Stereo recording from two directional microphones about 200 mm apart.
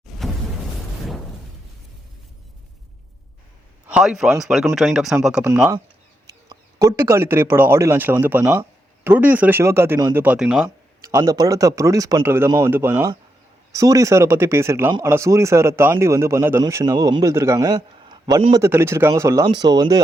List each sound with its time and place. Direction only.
0.0 s a sound: centre (ahead or behind)
3.8 s a man's voice: 5° right (ahead or behind)
6.2 s speech: 20° right (ahead or behind)
11.0 s speech: 15° right (ahead or behind)